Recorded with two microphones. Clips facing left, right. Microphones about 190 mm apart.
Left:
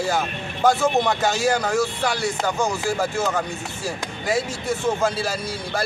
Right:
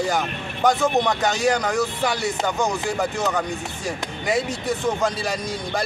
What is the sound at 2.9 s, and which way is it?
Speech, centre (ahead or behind).